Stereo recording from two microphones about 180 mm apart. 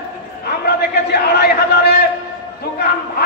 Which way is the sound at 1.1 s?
65° left (ahead or behind).